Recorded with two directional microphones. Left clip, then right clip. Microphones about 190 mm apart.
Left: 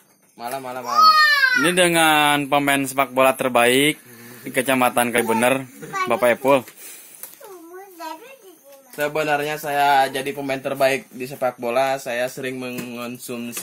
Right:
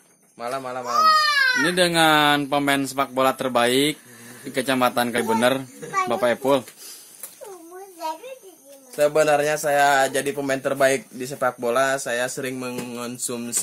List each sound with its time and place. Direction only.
0.4 s speech: 30° right (ahead or behind)
0.7 s speech: 20° right (ahead or behind)
1.6 s a man's voice: 10° left (ahead or behind)
8.9 s speech: 20° right (ahead or behind)